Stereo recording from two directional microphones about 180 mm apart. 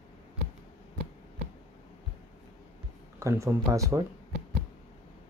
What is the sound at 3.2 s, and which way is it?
Speech, 15° right (ahead or behind).